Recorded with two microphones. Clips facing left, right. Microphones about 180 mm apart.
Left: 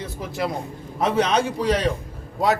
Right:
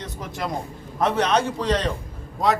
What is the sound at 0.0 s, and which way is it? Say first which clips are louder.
A man's voice: left 3 dB; 5° left (ahead or behind).